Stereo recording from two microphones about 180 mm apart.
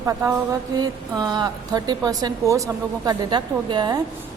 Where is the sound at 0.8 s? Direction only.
20° right (ahead or behind).